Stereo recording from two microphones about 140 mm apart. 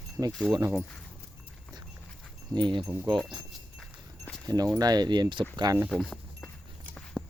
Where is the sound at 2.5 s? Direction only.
35° right (ahead or behind).